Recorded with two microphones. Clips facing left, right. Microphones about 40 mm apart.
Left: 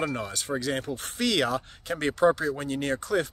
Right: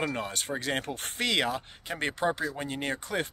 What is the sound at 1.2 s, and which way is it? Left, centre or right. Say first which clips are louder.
Speech: left 3 dB; right.